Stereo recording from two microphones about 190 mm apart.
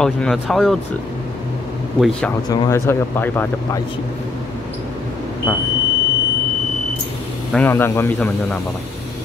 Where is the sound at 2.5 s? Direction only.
15° left (ahead or behind).